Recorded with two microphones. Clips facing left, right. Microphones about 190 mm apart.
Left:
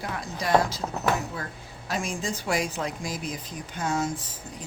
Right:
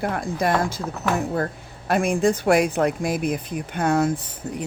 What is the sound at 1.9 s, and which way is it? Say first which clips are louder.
A woman's voice: right 11 dB; 60° right (ahead or behind).